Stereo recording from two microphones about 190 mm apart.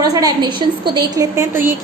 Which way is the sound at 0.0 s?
20° right (ahead or behind).